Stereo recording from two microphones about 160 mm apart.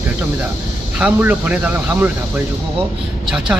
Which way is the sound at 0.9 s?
10° right (ahead or behind).